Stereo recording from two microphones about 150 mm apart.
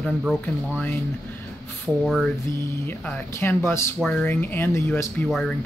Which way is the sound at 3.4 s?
15° left (ahead or behind).